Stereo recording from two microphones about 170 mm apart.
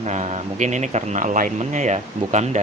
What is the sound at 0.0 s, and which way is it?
A man's voice, 40° right (ahead or behind).